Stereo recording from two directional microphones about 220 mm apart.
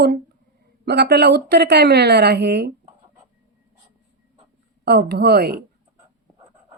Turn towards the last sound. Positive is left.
turn(degrees=-45)  # may be behind; listen again after turning